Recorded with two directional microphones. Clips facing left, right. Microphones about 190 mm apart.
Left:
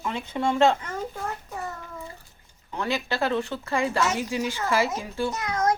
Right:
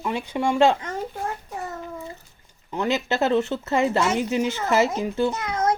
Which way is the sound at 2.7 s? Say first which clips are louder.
Right 4 dB; 20° right (ahead or behind).